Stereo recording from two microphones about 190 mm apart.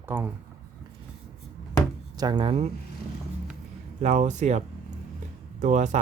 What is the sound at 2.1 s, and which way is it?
Speech, 20° right (ahead or behind).